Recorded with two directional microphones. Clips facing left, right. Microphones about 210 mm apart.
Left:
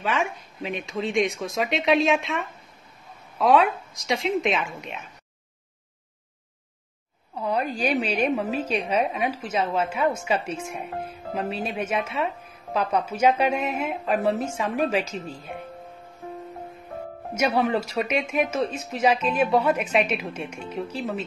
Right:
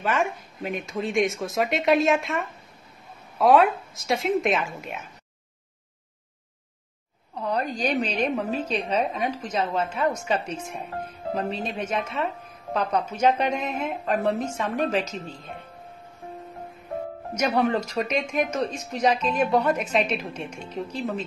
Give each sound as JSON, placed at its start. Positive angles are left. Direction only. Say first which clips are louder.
{"t": 0.0, "sound": "speech", "louder": "right 1 dB", "side_deg": 0}
{"t": 7.3, "sound": "speech", "louder": "left 1 dB", "side_deg": 10}
{"t": 17.3, "sound": "speech", "louder": "even", "side_deg": 5}